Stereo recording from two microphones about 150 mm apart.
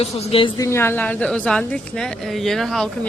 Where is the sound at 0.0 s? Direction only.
40° left (ahead or behind).